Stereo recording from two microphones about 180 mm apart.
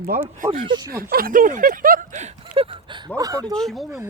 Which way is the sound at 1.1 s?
50° right (ahead or behind).